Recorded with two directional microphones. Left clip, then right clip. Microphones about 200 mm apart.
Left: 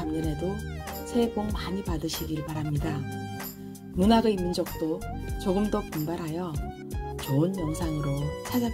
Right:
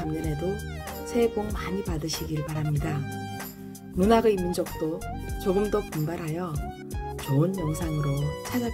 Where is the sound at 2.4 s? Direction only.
Centre (ahead or behind).